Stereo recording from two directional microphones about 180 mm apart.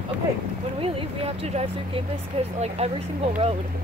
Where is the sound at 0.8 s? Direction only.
30° right (ahead or behind).